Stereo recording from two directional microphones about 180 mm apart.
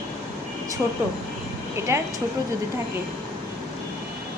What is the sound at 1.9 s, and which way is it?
Speech, 15° right (ahead or behind).